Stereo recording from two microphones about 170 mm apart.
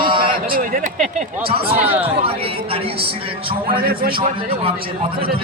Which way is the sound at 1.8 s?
10° right (ahead or behind).